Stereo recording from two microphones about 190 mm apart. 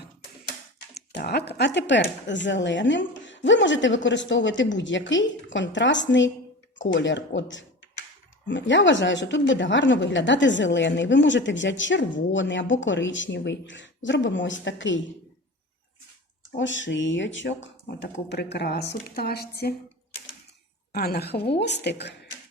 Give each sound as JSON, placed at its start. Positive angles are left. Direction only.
{"t": 0.9, "sound": "speech", "side_deg": 60}
{"t": 16.6, "sound": "a woman's voice", "side_deg": 75}
{"t": 20.9, "sound": "a woman's voice", "side_deg": 55}